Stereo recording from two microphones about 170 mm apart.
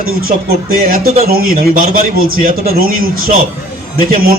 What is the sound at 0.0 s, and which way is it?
A man's voice, 60° right (ahead or behind).